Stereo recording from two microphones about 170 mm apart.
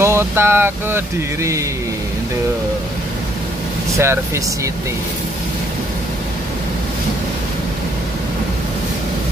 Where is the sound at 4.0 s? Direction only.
15° right (ahead or behind).